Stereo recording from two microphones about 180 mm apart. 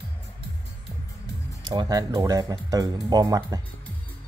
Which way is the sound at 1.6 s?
25° right (ahead or behind).